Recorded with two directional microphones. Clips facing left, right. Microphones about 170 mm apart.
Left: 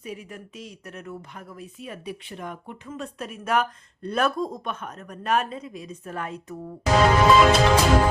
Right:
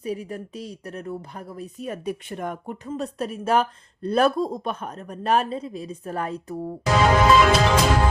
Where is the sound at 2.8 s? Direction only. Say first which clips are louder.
Right 6 dB; 35° right (ahead or behind).